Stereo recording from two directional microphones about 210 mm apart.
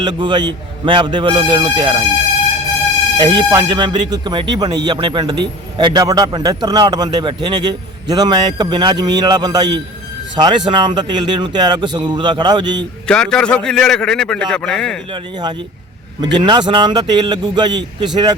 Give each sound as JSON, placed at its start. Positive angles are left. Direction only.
{"t": 0.0, "sound": "a man's voice", "side_deg": -20}
{"t": 3.2, "sound": "a man's voice", "side_deg": -20}
{"t": 13.1, "sound": "a man's voice", "side_deg": 5}
{"t": 15.1, "sound": "a man's voice", "side_deg": -20}